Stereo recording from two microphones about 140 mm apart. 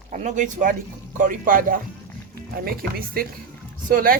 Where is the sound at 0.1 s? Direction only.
60° right (ahead or behind); by 1.8 s 75° right (ahead or behind).